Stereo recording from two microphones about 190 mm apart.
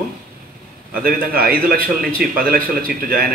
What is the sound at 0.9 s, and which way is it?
A man's voice, 50° right (ahead or behind).